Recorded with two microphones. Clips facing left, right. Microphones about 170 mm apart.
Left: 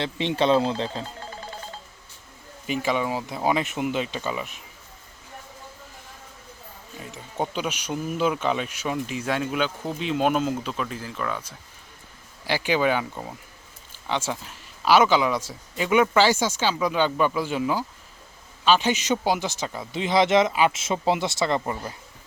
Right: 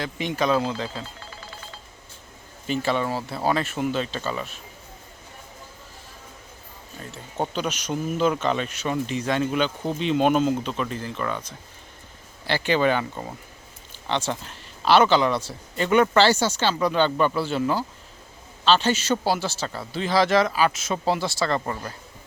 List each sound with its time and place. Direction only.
0.0 s speech: 30° left (ahead or behind)
2.6 s a man's voice: 10° left (ahead or behind)
7.0 s a man's voice: 15° left (ahead or behind)